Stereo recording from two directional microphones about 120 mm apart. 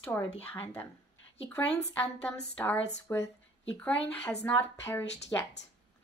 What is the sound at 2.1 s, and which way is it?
A woman's voice, 15° left (ahead or behind).